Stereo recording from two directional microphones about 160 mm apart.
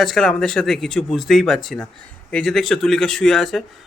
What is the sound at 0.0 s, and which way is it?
Speech, 5° left (ahead or behind).